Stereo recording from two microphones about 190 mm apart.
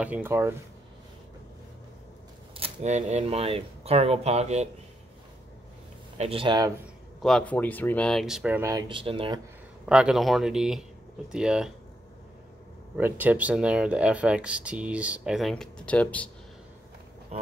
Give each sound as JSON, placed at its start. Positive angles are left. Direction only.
{"t": 0.0, "sound": "speech", "side_deg": -10}
{"t": 2.5, "sound": "speech", "side_deg": -35}
{"t": 6.1, "sound": "speech", "side_deg": -30}
{"t": 7.2, "sound": "speech", "side_deg": 5}
{"t": 8.5, "sound": "speech", "side_deg": -20}
{"t": 9.8, "sound": "speech", "side_deg": -5}
{"t": 12.9, "sound": "speech", "side_deg": -10}
{"t": 17.3, "sound": "pig", "side_deg": -35}